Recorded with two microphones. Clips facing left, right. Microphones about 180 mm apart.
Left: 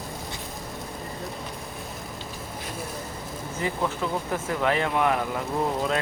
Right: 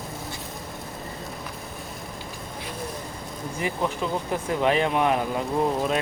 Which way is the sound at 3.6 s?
15° right (ahead or behind).